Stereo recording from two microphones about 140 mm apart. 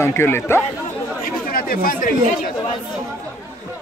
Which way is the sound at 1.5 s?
90° left.